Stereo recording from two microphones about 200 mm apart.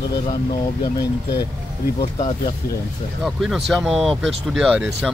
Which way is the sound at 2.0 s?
30° left (ahead or behind).